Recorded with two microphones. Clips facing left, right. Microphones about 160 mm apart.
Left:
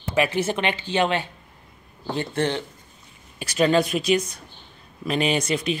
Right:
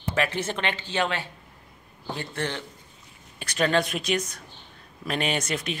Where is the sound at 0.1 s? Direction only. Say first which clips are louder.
Left 5 dB; 10° left (ahead or behind).